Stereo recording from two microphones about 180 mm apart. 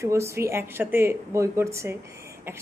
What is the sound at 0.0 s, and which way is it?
A woman's voice, 15° right (ahead or behind).